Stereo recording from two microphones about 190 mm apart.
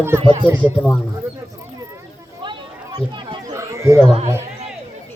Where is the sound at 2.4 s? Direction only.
25° right (ahead or behind).